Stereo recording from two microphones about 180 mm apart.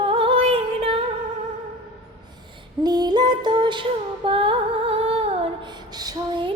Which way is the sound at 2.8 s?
25° right (ahead or behind).